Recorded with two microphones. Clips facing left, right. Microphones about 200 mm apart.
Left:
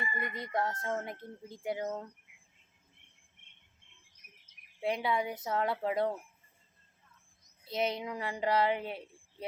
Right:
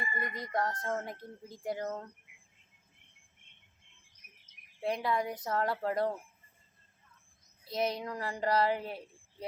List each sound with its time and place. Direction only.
0.0 s speech: 25° left (ahead or behind)
0.8 s speech: 5° left (ahead or behind)
4.8 s speech: 5° left (ahead or behind)
7.6 s speech: 25° left (ahead or behind)
7.9 s speech: 5° left (ahead or behind)